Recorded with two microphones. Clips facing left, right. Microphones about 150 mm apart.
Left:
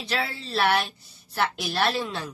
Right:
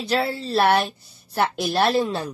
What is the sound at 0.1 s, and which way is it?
A woman's voice, 40° right (ahead or behind).